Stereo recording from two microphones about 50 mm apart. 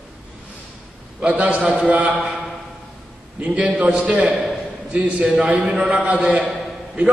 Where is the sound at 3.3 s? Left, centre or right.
Right.